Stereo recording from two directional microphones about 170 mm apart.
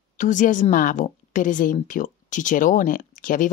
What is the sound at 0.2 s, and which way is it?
A woman's voice, 50° left (ahead or behind).